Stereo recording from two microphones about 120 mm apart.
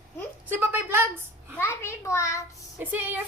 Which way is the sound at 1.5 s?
20° left (ahead or behind).